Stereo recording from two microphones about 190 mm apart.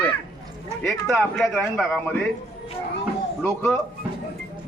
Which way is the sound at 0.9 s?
Centre (ahead or behind).